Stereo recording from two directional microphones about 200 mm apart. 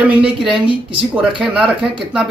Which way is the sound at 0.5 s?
25° right (ahead or behind).